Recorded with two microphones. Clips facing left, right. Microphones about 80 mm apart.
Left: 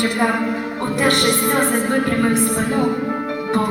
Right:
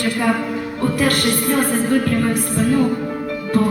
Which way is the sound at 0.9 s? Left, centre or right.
Left.